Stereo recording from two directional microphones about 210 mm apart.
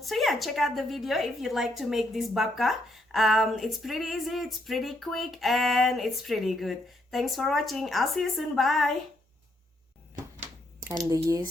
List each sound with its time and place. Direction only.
0.0 s a woman's voice: centre (ahead or behind)
11.0 s speech: 15° right (ahead or behind)